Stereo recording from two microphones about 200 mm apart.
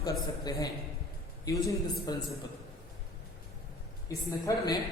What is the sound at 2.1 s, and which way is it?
Speech, 20° left (ahead or behind).